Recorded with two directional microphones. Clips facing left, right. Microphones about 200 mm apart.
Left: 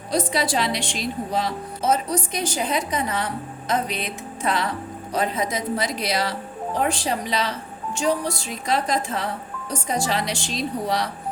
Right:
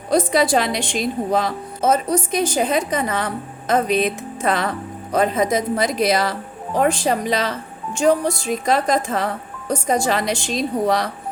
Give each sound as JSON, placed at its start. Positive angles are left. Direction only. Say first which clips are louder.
{"t": 0.1, "sound": "a woman's voice", "louder": "right 6 dB", "side_deg": -50}